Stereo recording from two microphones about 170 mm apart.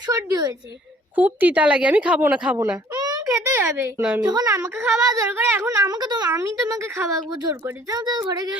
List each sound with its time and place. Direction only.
0.1 s a woman's voice: 20° right (ahead or behind)
2.6 s a child's voice: 20° right (ahead or behind)
4.2 s a woman's voice: 25° right (ahead or behind)